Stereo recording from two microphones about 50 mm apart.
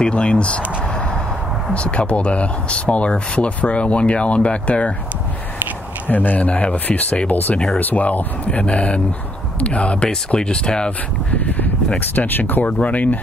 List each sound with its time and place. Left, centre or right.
0.0 s speech: left
1.7 s speech: left
6.0 s speech: left; by 10.9 s centre
11.3 s speech: left
12.6 s speech: left